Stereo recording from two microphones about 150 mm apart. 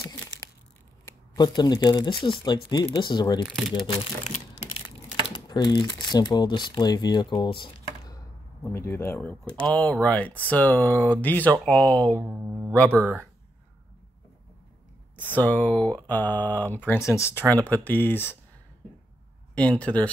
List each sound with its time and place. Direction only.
1.0 s speech: 30° left (ahead or behind)
8.6 s speech: 15° left (ahead or behind)
12.2 s speech: 10° right (ahead or behind)
15.1 s speech: 10° left (ahead or behind)
19.5 s speech: 5° left (ahead or behind)